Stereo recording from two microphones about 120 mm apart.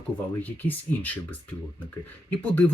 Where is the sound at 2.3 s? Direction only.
15° left (ahead or behind).